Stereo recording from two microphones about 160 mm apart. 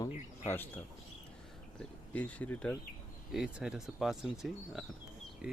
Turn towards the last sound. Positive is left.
turn(degrees=0)  # may be behind; listen again after turning